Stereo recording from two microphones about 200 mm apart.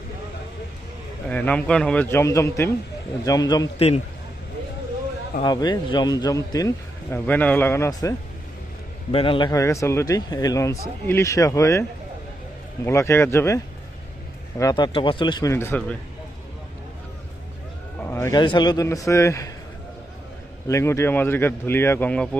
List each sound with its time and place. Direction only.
1.3 s speech: 5° left (ahead or behind)
5.4 s speech: 20° left (ahead or behind)
9.1 s speech: 25° left (ahead or behind)
14.6 s speech: 20° left (ahead or behind)
18.0 s speech: 15° left (ahead or behind)
20.7 s speech: 15° left (ahead or behind)